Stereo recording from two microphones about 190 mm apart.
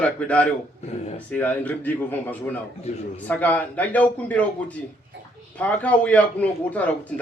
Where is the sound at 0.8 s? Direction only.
35° left (ahead or behind).